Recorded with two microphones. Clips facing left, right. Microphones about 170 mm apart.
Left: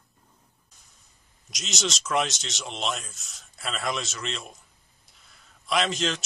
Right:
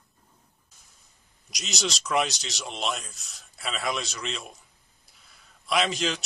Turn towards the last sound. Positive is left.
turn(degrees=0)  # may be behind; listen again after turning